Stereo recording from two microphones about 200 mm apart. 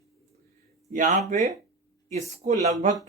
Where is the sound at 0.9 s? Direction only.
40° right (ahead or behind).